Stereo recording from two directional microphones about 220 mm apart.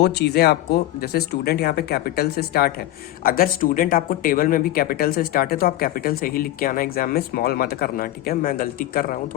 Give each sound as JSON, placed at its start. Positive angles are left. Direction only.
{"t": 0.0, "sound": "speech", "side_deg": 45}